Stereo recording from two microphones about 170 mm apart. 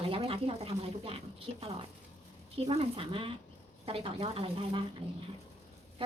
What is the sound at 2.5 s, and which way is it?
Speech, 35° right (ahead or behind).